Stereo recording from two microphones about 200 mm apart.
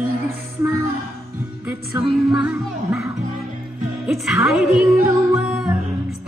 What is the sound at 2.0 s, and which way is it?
Music, 10° right (ahead or behind).